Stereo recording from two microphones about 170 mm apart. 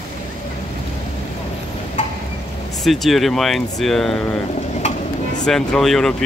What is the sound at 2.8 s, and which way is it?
Speech, centre (ahead or behind).